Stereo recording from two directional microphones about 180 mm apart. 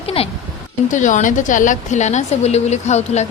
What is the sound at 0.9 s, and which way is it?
A woman's voice, 45° left (ahead or behind).